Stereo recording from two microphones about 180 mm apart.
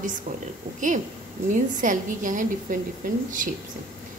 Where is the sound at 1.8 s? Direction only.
45° right (ahead or behind).